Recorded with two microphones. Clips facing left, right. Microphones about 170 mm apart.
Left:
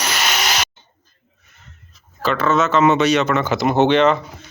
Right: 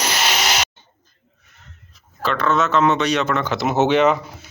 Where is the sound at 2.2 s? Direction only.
Centre (ahead or behind).